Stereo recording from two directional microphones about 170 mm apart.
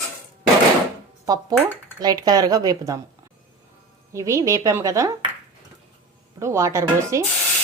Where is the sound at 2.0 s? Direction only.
25° right (ahead or behind).